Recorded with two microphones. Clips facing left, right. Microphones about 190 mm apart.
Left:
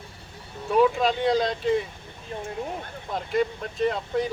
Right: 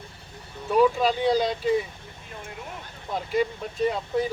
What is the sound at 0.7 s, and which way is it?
Speech, centre (ahead or behind).